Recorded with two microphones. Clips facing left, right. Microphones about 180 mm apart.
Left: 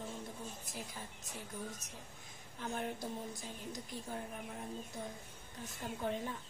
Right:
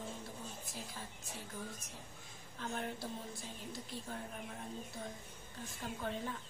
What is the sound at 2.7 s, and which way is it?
Speech, 15° left (ahead or behind).